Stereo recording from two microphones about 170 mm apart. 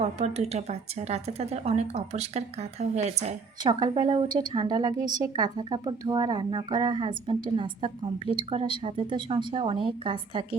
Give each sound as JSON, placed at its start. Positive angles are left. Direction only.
{"t": 0.0, "sound": "a woman's voice", "side_deg": -40}
{"t": 3.6, "sound": "a woman's voice", "side_deg": -25}